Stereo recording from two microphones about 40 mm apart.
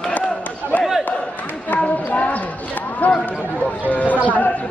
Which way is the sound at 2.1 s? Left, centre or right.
Left.